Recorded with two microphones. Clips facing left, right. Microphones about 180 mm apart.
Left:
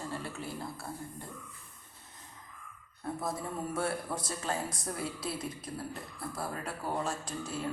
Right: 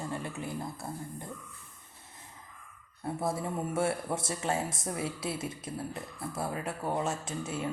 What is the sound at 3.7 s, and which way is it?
Speech, 25° right (ahead or behind).